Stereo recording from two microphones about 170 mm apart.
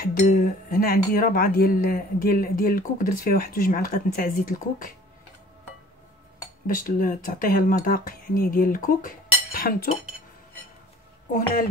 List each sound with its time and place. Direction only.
0.0 s speech: 60° left (ahead or behind)
6.7 s speech: 55° left (ahead or behind)